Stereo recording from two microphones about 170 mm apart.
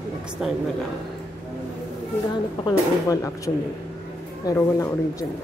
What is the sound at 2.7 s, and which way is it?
Speech, 20° left (ahead or behind).